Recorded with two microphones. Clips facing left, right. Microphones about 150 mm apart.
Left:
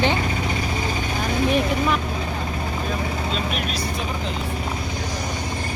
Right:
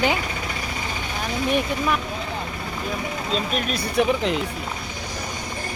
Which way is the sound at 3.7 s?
65° right (ahead or behind).